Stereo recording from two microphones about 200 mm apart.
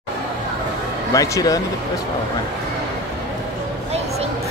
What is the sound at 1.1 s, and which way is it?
Speech, 15° left (ahead or behind).